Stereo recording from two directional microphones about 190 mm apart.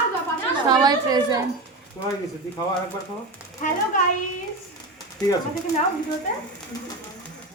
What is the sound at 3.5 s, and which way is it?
Speech, 40° left (ahead or behind).